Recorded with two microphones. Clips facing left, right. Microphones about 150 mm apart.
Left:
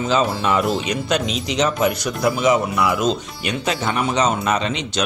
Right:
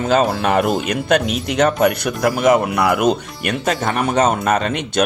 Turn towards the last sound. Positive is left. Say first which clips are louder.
# right 3 dB
turn(degrees=-50)  # may be behind; listen again after turning